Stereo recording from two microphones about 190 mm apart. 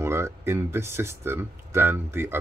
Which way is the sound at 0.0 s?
15° right (ahead or behind).